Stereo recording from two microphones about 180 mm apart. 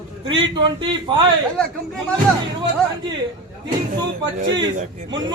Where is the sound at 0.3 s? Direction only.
25° right (ahead or behind).